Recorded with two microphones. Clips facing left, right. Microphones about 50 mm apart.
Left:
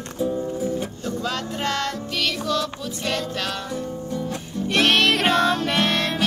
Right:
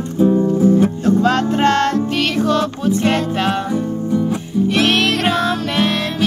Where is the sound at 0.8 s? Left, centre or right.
Right.